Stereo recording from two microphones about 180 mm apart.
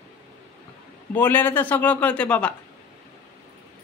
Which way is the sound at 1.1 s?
10° left (ahead or behind).